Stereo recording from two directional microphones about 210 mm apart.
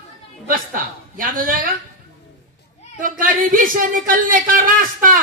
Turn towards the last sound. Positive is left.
turn(degrees=-40)  # may be behind; listen again after turning